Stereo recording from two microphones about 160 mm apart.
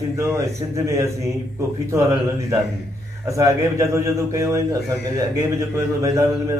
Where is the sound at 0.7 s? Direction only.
20° right (ahead or behind).